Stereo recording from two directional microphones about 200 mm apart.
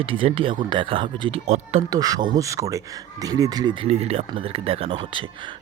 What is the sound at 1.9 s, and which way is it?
Speech, 20° right (ahead or behind).